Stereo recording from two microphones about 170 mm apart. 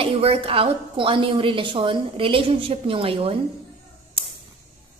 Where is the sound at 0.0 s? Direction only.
35° right (ahead or behind).